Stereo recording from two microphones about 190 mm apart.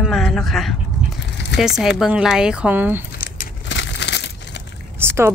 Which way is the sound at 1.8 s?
Centre (ahead or behind).